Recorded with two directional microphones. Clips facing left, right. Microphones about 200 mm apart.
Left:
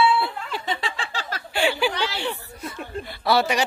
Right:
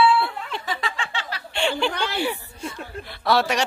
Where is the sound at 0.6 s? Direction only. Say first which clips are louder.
Even; 30° left (ahead or behind).